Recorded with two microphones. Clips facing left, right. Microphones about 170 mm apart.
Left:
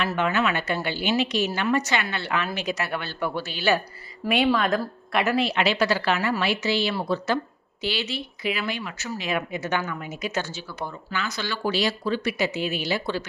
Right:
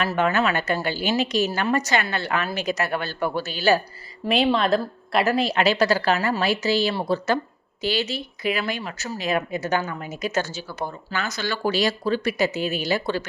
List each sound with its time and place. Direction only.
0.2 s a woman's voice: 45° right (ahead or behind)